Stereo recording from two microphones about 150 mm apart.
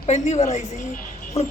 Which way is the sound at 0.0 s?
45° left (ahead or behind).